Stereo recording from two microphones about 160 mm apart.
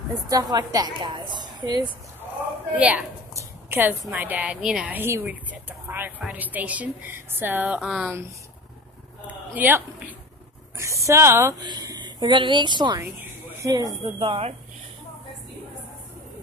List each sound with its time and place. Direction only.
0.3 s a woman's voice: 25° right (ahead or behind)
2.7 s a woman's voice: 10° right (ahead or behind)
3.3 s a sound: 10° right (ahead or behind)
4.1 s a woman's voice: 10° right (ahead or behind)
9.6 s a woman's voice: 10° right (ahead or behind); by 13.0 s 30° right (ahead or behind)
13.0 s a sound: 10° right (ahead or behind)
13.7 s a woman's voice: 20° right (ahead or behind)
14.2 s speech: 35° right (ahead or behind)